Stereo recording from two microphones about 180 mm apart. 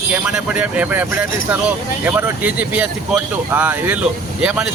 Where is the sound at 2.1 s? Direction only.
10° right (ahead or behind).